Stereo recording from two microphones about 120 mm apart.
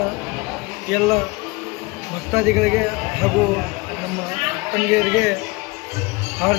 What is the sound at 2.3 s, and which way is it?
Speech, centre (ahead or behind).